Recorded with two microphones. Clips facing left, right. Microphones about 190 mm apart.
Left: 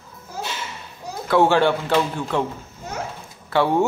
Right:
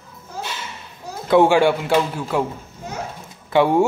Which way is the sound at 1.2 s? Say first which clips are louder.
Right 3 dB; 15° right (ahead or behind).